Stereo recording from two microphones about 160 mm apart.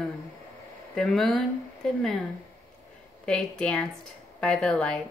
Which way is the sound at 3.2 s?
5° left (ahead or behind).